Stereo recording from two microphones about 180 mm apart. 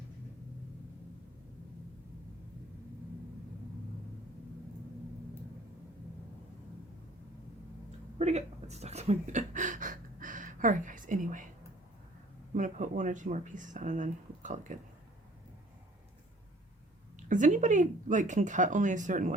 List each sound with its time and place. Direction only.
8.2 s speech: 40° right (ahead or behind)
12.5 s speech: 45° right (ahead or behind)
17.2 s speech: 45° right (ahead or behind)